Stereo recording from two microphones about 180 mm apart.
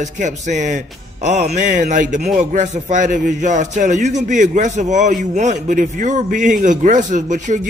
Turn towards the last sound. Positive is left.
turn(degrees=-45)  # may be behind; listen again after turning